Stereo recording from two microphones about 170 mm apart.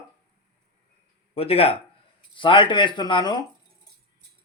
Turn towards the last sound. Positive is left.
turn(degrees=25)  # may be behind; listen again after turning